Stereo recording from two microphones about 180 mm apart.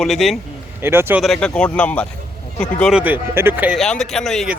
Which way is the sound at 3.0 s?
10° right (ahead or behind).